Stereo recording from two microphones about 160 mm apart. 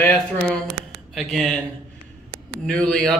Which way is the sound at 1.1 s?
Centre (ahead or behind).